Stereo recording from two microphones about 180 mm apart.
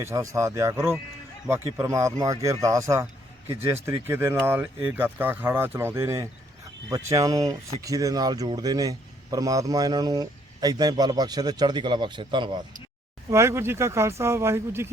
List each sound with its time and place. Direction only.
0.0 s speech: 15° right (ahead or behind)
13.3 s speech: 15° right (ahead or behind)